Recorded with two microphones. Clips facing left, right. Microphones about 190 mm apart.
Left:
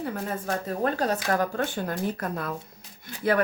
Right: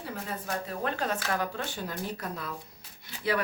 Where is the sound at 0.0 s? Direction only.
50° left (ahead or behind).